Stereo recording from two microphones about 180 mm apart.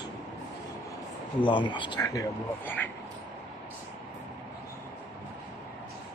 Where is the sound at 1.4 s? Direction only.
25° left (ahead or behind); by 2.9 s 10° left (ahead or behind).